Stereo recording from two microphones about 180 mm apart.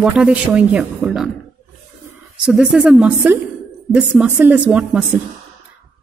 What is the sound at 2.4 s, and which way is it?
A woman's voice, 5° right (ahead or behind).